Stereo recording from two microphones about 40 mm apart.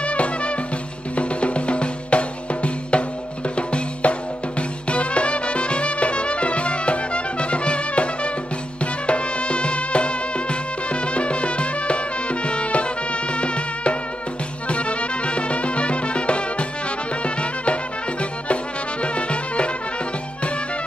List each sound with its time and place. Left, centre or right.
0.0 s music: left
3.5 s drum: left
4.6 s music: left
19.1 s music: left